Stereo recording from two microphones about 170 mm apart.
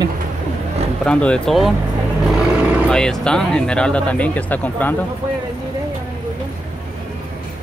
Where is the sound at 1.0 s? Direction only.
5° left (ahead or behind).